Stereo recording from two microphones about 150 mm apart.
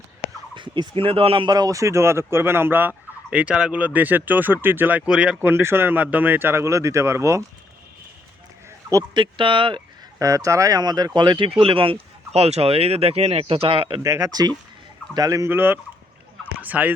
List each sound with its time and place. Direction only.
0.5 s speech: 30° right (ahead or behind)
8.9 s speech: 25° right (ahead or behind)
14.0 s speech: 20° right (ahead or behind)
16.4 s a sound: 10° right (ahead or behind)